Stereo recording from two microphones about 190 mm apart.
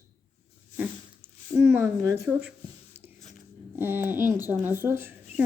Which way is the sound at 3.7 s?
10° right (ahead or behind).